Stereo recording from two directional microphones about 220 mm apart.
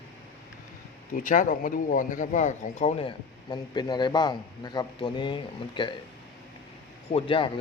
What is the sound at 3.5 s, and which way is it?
Speech, 20° left (ahead or behind).